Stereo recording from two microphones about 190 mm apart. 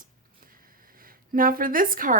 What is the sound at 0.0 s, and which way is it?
Speech, 45° right (ahead or behind).